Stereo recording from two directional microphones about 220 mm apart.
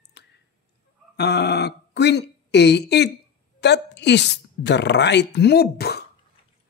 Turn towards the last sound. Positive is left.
turn(degrees=45)  # may be behind; listen again after turning